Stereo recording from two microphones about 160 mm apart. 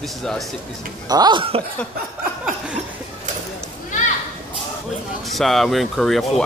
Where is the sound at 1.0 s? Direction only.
25° right (ahead or behind).